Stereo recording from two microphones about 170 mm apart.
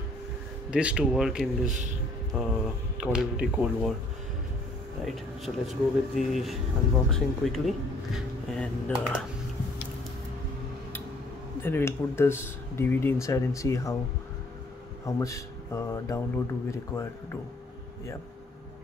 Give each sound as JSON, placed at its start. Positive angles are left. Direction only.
{"t": 0.7, "sound": "speech", "side_deg": -5}
{"t": 5.0, "sound": "speech", "side_deg": 0}
{"t": 11.6, "sound": "speech", "side_deg": 15}
{"t": 15.0, "sound": "speech", "side_deg": 20}